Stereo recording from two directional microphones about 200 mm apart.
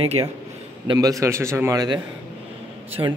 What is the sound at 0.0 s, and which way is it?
Speech, 30° right (ahead or behind).